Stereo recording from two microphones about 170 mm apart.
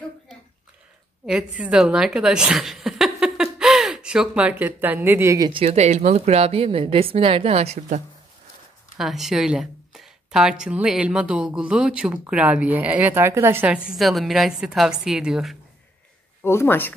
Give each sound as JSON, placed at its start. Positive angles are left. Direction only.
{"t": 1.2, "sound": "a woman's voice", "side_deg": -5}
{"t": 5.5, "sound": "a woman's voice", "side_deg": -35}
{"t": 8.9, "sound": "speech", "side_deg": 0}
{"t": 16.4, "sound": "speech", "side_deg": 15}